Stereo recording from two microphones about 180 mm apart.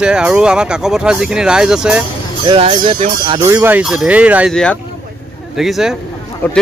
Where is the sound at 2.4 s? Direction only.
30° right (ahead or behind).